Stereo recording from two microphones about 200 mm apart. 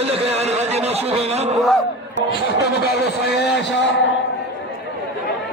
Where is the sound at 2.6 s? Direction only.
55° left (ahead or behind).